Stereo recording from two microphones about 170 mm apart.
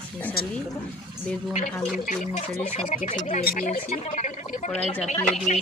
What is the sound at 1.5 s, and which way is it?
Speech, 50° left (ahead or behind).